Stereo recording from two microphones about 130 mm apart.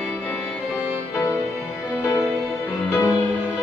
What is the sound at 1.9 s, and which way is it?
Music, 20° left (ahead or behind).